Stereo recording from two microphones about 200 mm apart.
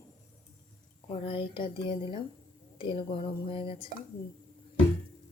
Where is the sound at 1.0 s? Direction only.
25° left (ahead or behind).